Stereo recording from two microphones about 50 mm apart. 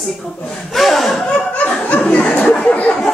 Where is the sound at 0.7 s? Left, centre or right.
Centre.